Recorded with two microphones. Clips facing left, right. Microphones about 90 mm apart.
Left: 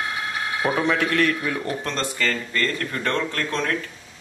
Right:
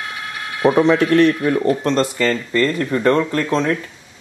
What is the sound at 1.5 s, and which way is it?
Speech, 40° right (ahead or behind).